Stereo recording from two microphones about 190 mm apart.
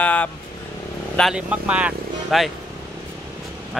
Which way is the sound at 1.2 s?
5° right (ahead or behind).